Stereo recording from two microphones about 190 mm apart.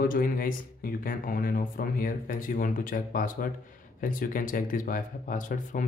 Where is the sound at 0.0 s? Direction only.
50° left (ahead or behind).